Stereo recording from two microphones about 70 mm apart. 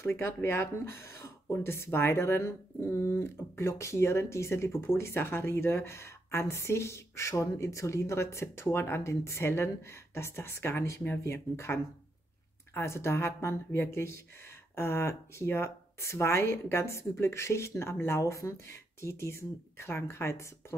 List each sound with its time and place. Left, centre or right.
0.0 s speech: left